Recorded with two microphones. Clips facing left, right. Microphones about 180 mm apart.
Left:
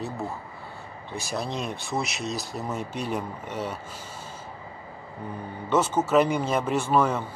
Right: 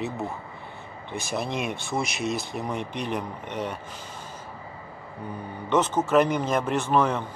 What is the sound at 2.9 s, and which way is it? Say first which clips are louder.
Speech: even; 10° left (ahead or behind).